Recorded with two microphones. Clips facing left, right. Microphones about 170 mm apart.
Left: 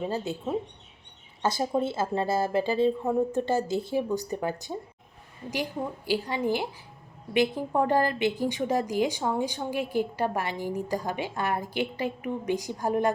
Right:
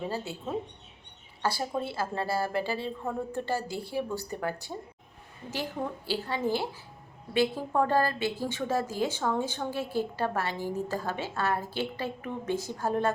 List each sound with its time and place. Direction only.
0.1 s a woman's voice: 15° left (ahead or behind)
6.1 s a woman's voice: 15° left (ahead or behind)